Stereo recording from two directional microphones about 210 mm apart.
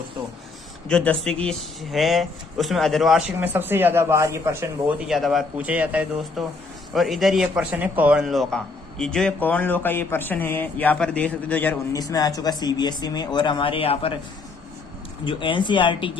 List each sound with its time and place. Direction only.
0.9 s a man's voice: 5° left (ahead or behind); by 14.1 s 25° left (ahead or behind)
15.2 s speech: 25° left (ahead or behind)